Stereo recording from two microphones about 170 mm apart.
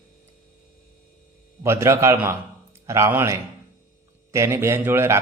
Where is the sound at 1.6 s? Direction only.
15° right (ahead or behind).